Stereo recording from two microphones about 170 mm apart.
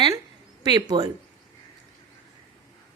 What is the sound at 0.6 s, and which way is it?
Speech, 25° right (ahead or behind).